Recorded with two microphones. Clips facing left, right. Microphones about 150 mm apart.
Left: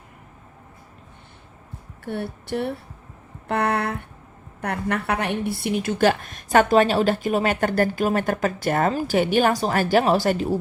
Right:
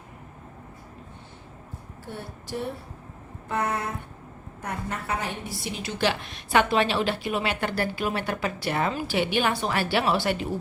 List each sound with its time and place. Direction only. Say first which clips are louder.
2.0 s a woman's voice: left 9 dB; 65° left (ahead or behind); by 10.6 s 40° left (ahead or behind)